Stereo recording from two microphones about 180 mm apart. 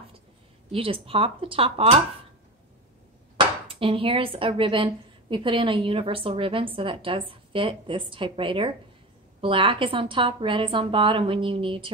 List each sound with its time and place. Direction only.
0.7 s speech: 30° right (ahead or behind)
3.3 s speech: 30° right (ahead or behind)